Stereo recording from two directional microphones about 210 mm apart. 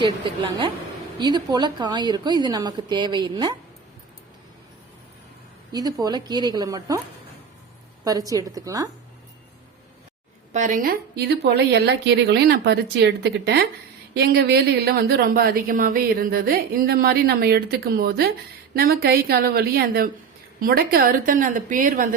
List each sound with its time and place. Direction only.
1.2 s a woman's voice: 20° right (ahead or behind)
5.7 s a woman's voice: 15° right (ahead or behind)
8.0 s a woman's voice: 15° right (ahead or behind)
10.5 s a woman's voice: 35° right (ahead or behind)